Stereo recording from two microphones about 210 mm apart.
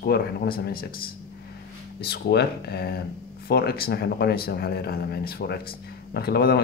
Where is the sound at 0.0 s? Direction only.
45° left (ahead or behind).